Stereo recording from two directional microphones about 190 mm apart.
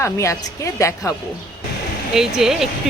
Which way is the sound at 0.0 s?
15° left (ahead or behind).